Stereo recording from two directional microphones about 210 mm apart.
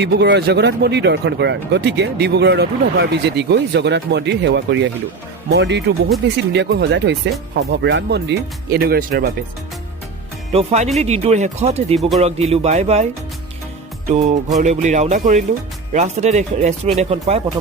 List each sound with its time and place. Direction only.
0.0 s speech: 55° right (ahead or behind)
10.5 s speech: 30° right (ahead or behind)
11.9 s speech: centre (ahead or behind)
12.2 s speech: 30° right (ahead or behind)
14.6 s speech: 35° right (ahead or behind)